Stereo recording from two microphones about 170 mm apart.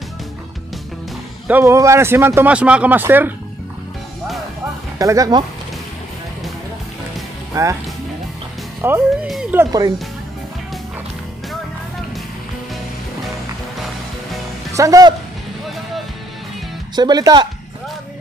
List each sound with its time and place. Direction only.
1.5 s speech: 15° right (ahead or behind)
4.9 s speech: 20° right (ahead or behind)
7.5 s speech: 20° right (ahead or behind)
8.8 s speech: 10° right (ahead or behind)
9.7 s speech: 20° right (ahead or behind)
14.7 s speech: 20° right (ahead or behind)
16.9 s speech: 25° right (ahead or behind)